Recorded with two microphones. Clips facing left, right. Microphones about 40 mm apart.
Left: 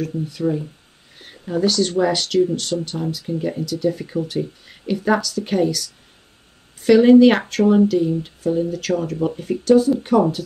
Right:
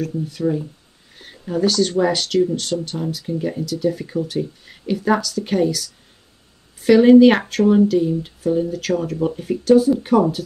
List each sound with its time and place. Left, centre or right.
0.0 s speech: centre